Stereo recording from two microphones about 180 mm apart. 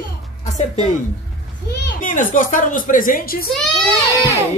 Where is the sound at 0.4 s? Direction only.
40° left (ahead or behind).